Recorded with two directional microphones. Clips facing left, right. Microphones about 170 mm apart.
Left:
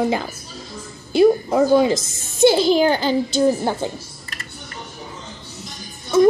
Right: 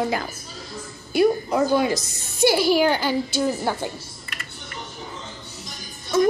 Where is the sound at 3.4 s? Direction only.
20° left (ahead or behind).